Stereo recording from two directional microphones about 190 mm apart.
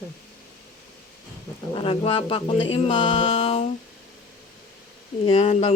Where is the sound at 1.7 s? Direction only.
30° left (ahead or behind).